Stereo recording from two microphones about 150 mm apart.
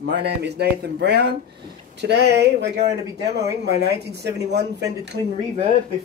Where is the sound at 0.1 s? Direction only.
90° right.